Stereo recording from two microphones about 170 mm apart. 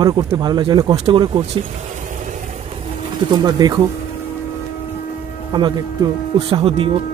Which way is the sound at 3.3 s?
25° right (ahead or behind).